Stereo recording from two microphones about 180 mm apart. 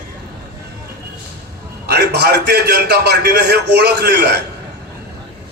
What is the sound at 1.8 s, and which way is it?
A man's voice, 65° right (ahead or behind).